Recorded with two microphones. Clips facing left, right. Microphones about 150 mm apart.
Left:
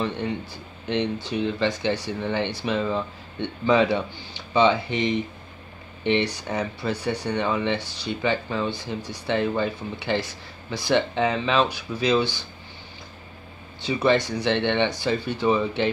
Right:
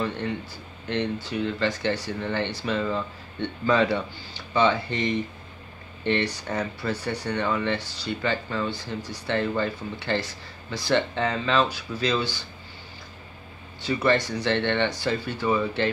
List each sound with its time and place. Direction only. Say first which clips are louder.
0.8 s a man's voice: left 2 dB; 20° left (ahead or behind)
13.8 s a man's voice: left 2 dB; 15° left (ahead or behind)